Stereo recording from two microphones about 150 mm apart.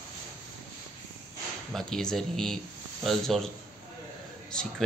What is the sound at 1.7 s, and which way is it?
Speech, 5° left (ahead or behind).